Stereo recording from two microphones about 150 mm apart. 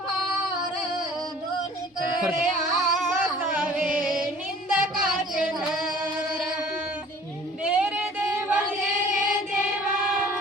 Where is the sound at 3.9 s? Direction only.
65° right (ahead or behind).